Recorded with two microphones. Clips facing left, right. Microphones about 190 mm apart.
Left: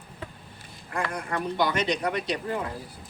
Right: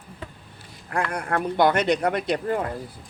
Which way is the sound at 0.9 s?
60° right (ahead or behind).